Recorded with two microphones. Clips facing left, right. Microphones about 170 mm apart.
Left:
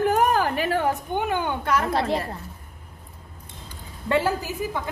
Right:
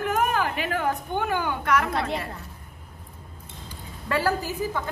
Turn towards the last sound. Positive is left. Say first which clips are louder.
# even
turn(degrees=20)  # may be behind; listen again after turning